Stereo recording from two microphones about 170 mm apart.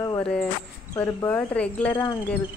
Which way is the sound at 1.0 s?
10° left (ahead or behind).